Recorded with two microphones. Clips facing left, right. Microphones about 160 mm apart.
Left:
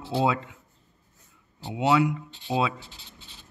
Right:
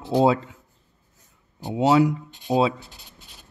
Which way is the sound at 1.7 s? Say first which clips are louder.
Right 4 dB; 40° right (ahead or behind).